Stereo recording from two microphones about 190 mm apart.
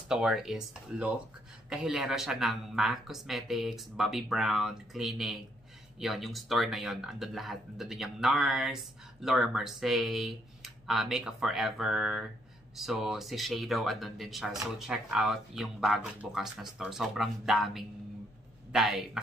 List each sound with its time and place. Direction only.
0.1 s speech: centre (ahead or behind)